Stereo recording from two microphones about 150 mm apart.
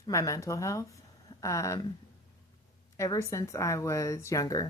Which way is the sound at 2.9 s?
20° left (ahead or behind).